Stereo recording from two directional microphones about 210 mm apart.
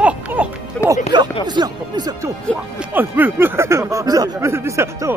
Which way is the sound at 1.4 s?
20° right (ahead or behind).